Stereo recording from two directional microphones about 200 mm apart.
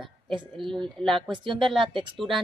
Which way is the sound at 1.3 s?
25° right (ahead or behind).